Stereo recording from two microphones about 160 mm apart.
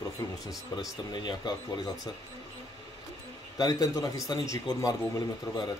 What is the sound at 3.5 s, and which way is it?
Speech, 20° left (ahead or behind).